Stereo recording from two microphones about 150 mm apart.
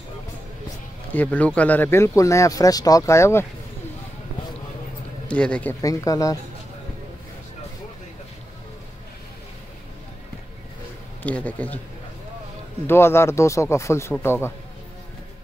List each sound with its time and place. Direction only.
1.1 s speech: 10° left (ahead or behind)
5.3 s speech: 5° left (ahead or behind)
5.8 s speech: 20° left (ahead or behind)
11.2 s speech: 10° left (ahead or behind)
12.8 s speech: 15° left (ahead or behind)